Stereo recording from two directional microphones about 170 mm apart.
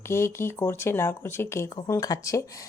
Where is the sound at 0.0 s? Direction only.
15° left (ahead or behind).